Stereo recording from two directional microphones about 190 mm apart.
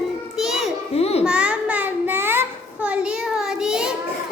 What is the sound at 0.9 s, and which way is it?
Babbling, 30° left (ahead or behind).